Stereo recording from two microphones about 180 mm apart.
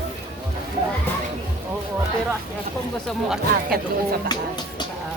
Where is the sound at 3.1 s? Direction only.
5° right (ahead or behind).